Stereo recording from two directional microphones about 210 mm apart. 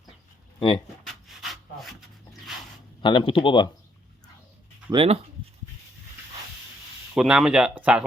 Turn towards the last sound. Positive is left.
turn(degrees=-5)  # may be behind; listen again after turning